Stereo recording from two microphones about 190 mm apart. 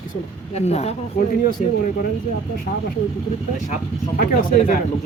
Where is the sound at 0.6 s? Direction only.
35° left (ahead or behind).